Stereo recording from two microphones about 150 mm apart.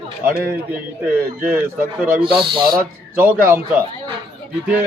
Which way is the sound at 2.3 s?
35° right (ahead or behind).